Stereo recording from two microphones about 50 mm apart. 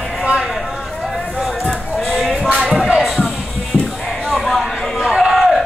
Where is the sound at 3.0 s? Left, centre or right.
Centre.